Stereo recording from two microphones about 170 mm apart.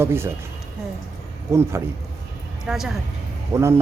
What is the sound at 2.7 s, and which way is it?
Speech, centre (ahead or behind).